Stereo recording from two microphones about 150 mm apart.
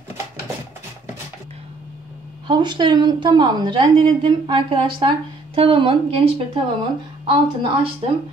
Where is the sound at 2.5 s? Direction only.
30° right (ahead or behind).